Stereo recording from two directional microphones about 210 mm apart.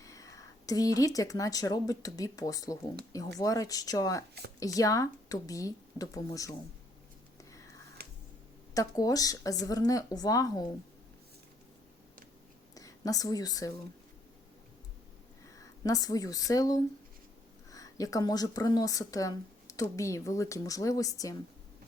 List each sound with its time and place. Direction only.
0.0 s speech: 15° left (ahead or behind)
8.7 s speech: 15° left (ahead or behind)
12.7 s speech: 15° left (ahead or behind)
15.8 s speech: 15° left (ahead or behind)